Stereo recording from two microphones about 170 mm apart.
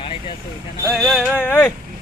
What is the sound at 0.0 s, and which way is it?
Vehicle, 30° left (ahead or behind).